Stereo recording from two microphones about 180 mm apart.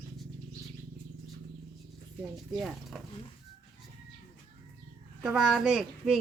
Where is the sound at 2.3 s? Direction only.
Centre (ahead or behind).